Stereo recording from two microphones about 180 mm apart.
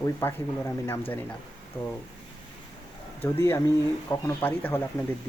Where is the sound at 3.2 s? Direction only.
15° left (ahead or behind).